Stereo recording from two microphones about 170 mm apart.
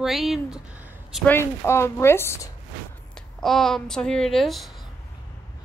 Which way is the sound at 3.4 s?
Centre (ahead or behind).